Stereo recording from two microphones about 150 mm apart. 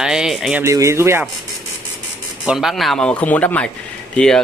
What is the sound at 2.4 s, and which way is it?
Speech, centre (ahead or behind).